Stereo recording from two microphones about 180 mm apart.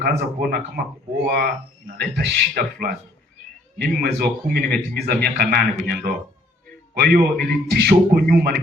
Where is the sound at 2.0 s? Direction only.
60° right (ahead or behind).